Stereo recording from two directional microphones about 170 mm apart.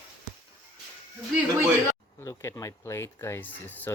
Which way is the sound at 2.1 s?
15° left (ahead or behind).